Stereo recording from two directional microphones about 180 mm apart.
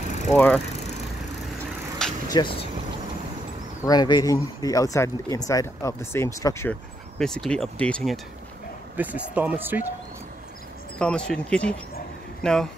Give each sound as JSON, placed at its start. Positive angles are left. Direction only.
{"t": 0.3, "sound": "speech", "side_deg": 10}
{"t": 2.0, "sound": "vehicle", "side_deg": 5}
{"t": 2.3, "sound": "speech", "side_deg": 30}
{"t": 3.8, "sound": "speech", "side_deg": 20}
{"t": 7.2, "sound": "speech", "side_deg": 5}
{"t": 8.9, "sound": "speech", "side_deg": -10}
{"t": 11.0, "sound": "speech", "side_deg": 5}